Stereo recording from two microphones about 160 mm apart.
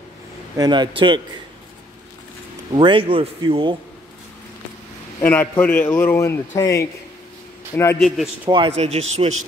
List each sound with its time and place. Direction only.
0.6 s a man's voice: 30° right (ahead or behind)
2.7 s a man's voice: 30° right (ahead or behind)
5.2 s a man's voice: 10° left (ahead or behind)
8.5 s a man's voice: 30° right (ahead or behind)